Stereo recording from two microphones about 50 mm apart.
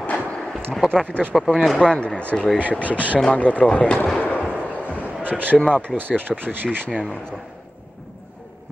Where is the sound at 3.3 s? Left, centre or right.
Left.